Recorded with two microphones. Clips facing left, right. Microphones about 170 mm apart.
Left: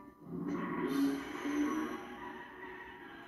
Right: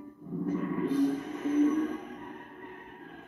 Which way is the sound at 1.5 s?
30° right (ahead or behind).